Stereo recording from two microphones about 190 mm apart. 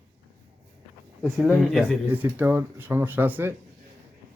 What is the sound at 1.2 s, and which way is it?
Speech, centre (ahead or behind).